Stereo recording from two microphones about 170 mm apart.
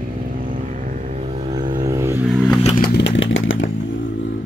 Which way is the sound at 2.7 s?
80° left.